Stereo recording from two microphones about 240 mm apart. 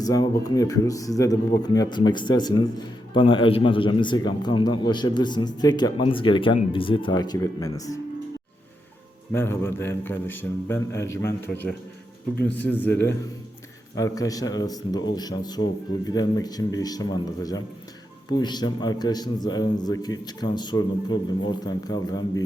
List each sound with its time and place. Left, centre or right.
0.0 s speech: centre
9.3 s speech: centre